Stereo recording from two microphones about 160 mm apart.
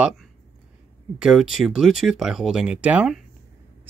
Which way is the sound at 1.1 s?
5° right (ahead or behind).